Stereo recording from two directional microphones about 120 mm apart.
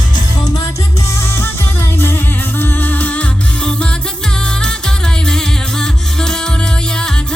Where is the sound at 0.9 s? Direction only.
25° left (ahead or behind).